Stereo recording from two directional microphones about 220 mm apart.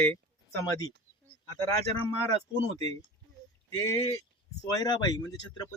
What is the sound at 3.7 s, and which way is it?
Speech, 15° left (ahead or behind).